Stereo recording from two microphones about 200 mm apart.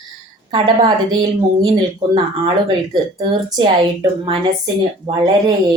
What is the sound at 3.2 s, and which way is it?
Speech, 25° right (ahead or behind).